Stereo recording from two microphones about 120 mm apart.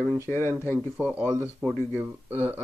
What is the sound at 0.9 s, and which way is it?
Speech, 10° right (ahead or behind).